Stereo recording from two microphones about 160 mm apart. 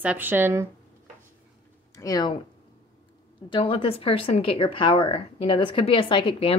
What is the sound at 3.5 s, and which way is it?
A woman's voice, 35° left (ahead or behind).